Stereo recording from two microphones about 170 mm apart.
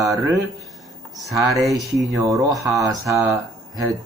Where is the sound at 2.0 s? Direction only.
20° right (ahead or behind).